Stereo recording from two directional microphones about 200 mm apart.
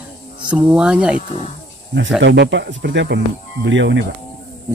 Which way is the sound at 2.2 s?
65° right (ahead or behind).